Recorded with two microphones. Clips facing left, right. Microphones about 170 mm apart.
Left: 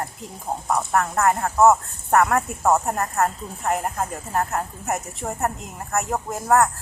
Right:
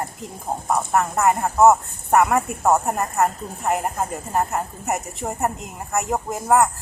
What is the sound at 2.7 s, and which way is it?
Speech, 15° right (ahead or behind).